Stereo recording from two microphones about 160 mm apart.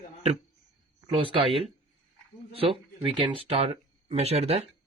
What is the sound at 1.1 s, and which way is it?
Speech, 35° right (ahead or behind).